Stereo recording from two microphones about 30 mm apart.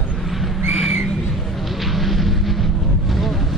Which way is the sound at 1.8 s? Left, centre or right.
Centre.